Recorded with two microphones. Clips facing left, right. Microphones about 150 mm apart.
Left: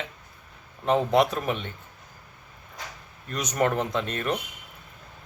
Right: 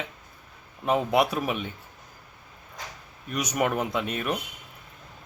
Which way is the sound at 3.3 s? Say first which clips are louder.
Left 1 dB; 10° right (ahead or behind).